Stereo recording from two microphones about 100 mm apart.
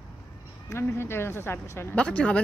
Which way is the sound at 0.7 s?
25° left (ahead or behind).